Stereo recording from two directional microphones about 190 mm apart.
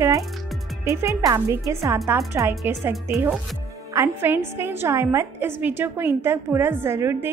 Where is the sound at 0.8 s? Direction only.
15° right (ahead or behind).